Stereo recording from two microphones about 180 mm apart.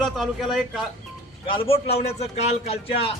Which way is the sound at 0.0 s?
Centre (ahead or behind).